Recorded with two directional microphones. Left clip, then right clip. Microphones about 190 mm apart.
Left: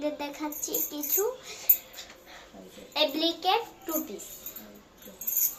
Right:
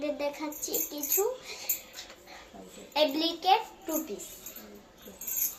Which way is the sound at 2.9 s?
20° left (ahead or behind).